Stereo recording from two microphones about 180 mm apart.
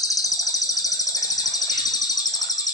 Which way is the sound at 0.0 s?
20° left (ahead or behind).